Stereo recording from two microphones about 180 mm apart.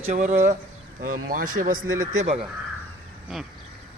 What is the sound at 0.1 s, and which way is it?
Speech, 40° right (ahead or behind).